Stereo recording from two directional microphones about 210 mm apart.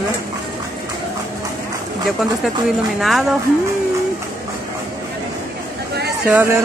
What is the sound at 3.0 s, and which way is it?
Speech, centre (ahead or behind).